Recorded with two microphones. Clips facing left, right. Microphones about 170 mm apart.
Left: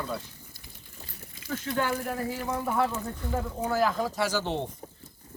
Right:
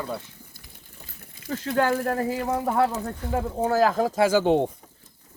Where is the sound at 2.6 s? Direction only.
40° right (ahead or behind).